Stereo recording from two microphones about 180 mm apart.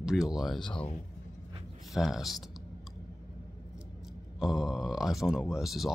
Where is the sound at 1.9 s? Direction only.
Centre (ahead or behind).